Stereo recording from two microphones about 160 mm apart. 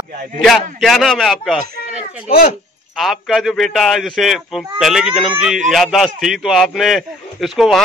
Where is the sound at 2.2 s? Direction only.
70° left (ahead or behind).